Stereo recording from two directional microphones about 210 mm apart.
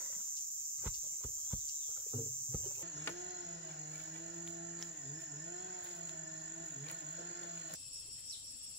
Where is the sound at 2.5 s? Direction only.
25° right (ahead or behind).